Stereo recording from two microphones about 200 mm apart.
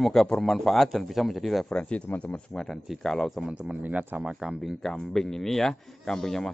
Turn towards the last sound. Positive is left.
turn(degrees=0)  # may be behind; listen again after turning